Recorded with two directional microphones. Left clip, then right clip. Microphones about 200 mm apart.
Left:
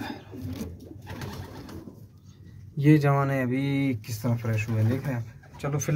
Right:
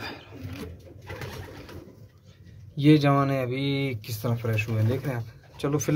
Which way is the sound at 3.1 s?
20° right (ahead or behind).